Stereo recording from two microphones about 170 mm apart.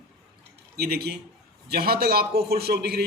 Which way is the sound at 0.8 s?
70° right (ahead or behind).